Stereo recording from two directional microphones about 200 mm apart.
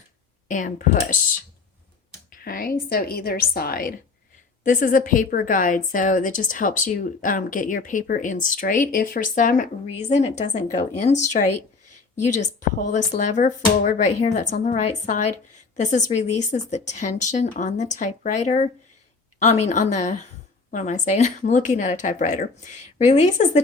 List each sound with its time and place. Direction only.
0.4 s speech: 40° left (ahead or behind)
2.3 s a woman's voice: 45° left (ahead or behind)